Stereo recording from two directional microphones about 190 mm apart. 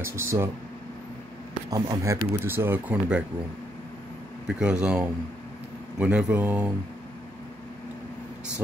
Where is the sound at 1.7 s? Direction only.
15° right (ahead or behind).